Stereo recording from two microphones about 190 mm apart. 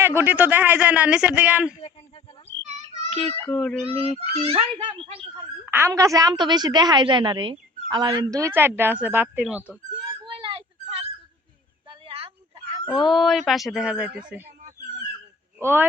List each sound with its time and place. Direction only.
0.0 s a woman's voice: 10° right (ahead or behind)
2.6 s music: 35° right (ahead or behind)
3.5 s speech: centre (ahead or behind)
3.8 s speech: 30° right (ahead or behind)
5.6 s a woman's voice: 10° right (ahead or behind)
10.2 s a sound: 25° right (ahead or behind)
13.1 s speech: centre (ahead or behind)
15.5 s speech: 10° right (ahead or behind)